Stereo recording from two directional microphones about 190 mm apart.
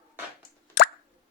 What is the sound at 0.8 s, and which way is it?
Plop, 60° left (ahead or behind).